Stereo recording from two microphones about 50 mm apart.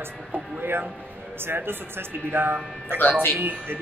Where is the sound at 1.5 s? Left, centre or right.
Right.